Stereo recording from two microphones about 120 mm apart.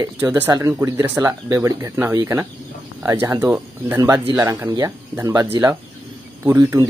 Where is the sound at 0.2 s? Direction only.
20° right (ahead or behind).